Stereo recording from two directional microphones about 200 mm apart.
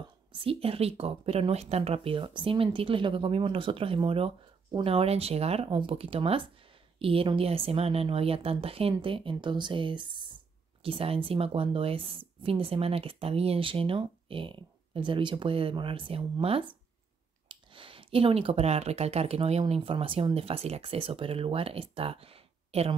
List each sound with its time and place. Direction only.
0.3 s speech: 25° right (ahead or behind)